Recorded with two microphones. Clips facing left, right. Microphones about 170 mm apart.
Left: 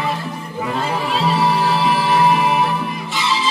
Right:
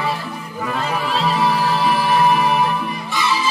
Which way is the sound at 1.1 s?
20° left (ahead or behind).